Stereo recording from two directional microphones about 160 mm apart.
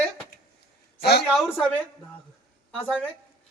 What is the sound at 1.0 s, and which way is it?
Speech, 90° left.